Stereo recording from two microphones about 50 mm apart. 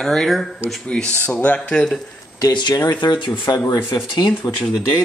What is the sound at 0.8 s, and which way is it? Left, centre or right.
Speech, left.